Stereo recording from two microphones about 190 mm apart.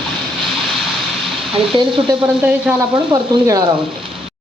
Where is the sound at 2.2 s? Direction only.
10° right (ahead or behind).